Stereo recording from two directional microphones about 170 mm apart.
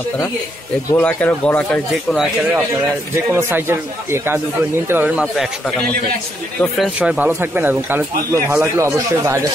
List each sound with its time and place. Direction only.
0.9 s speech: 10° left (ahead or behind)
3.3 s speech: 15° right (ahead or behind)
6.6 s speech: 5° right (ahead or behind)